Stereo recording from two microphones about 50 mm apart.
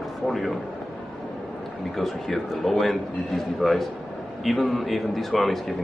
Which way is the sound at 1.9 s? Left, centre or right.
Centre.